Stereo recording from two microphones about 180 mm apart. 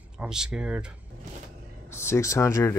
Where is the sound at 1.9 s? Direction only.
15° left (ahead or behind).